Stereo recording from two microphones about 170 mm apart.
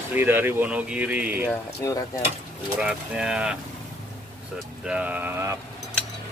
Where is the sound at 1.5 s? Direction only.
15° left (ahead or behind).